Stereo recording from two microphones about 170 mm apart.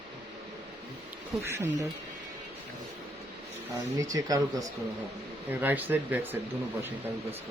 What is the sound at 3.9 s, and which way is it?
Speech, 20° right (ahead or behind).